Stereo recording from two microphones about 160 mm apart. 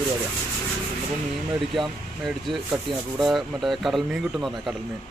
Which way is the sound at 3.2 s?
Centre (ahead or behind).